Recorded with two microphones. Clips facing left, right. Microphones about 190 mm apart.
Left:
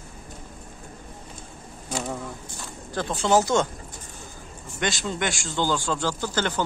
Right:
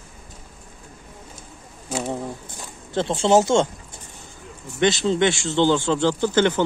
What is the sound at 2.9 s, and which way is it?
Speech, 25° right (ahead or behind).